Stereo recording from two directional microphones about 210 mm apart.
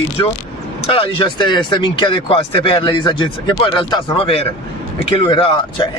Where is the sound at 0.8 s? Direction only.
25° left (ahead or behind).